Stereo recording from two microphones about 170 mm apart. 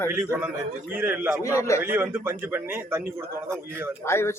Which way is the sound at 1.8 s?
10° right (ahead or behind).